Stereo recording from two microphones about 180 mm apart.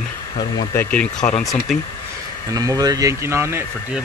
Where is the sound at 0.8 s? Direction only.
10° left (ahead or behind).